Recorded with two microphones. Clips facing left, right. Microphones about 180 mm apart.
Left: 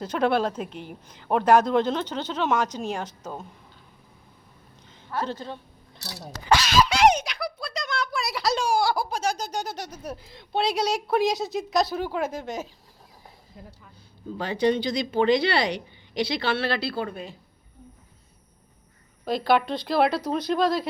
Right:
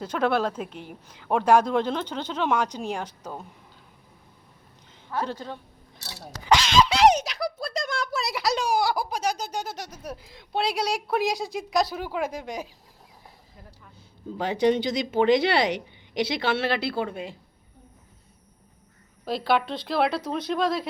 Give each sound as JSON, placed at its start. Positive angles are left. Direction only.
{"t": 0.0, "sound": "speech", "side_deg": -5}
{"t": 5.0, "sound": "speech", "side_deg": -10}
{"t": 7.1, "sound": "a sound", "side_deg": -40}
{"t": 8.3, "sound": "speech", "side_deg": -15}
{"t": 14.3, "sound": "speech", "side_deg": -20}
{"t": 19.2, "sound": "speech", "side_deg": -5}